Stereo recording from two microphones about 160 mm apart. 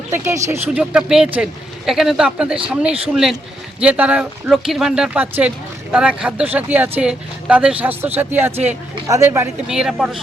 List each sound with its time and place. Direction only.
0.1 s speech: 15° right (ahead or behind)
9.6 s speech: 5° right (ahead or behind)